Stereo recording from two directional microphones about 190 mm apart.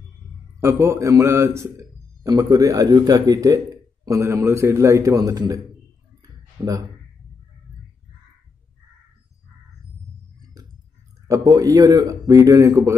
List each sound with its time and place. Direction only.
0.6 s a man's voice: 15° right (ahead or behind)
6.2 s a sound: 20° right (ahead or behind)
11.2 s a man's voice: 20° right (ahead or behind)